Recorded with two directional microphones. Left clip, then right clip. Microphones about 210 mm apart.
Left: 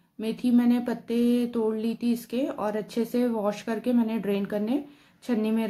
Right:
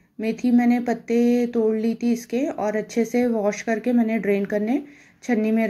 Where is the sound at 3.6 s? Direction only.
40° left (ahead or behind).